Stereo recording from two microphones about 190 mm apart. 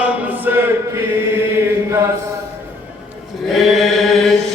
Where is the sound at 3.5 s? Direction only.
Centre (ahead or behind).